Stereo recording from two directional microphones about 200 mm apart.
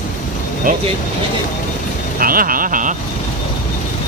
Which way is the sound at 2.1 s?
45° right (ahead or behind).